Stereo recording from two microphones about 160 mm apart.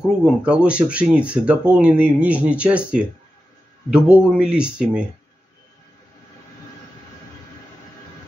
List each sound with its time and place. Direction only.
0.0 s a man's voice: 5° right (ahead or behind)